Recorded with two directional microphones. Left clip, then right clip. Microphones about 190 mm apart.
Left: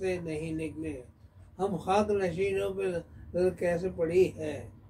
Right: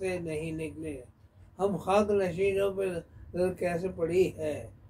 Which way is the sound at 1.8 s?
15° right (ahead or behind).